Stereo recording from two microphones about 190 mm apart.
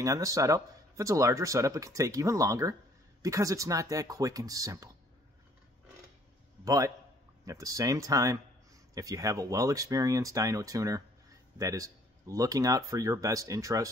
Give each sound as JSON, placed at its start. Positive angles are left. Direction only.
{"t": 0.0, "sound": "speech", "side_deg": -15}
{"t": 6.6, "sound": "a man's voice", "side_deg": -15}